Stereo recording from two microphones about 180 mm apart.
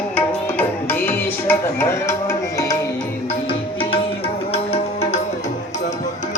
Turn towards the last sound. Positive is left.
turn(degrees=35)  # may be behind; listen again after turning